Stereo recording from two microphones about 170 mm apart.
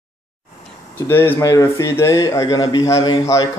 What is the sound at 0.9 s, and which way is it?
Speech, 15° left (ahead or behind).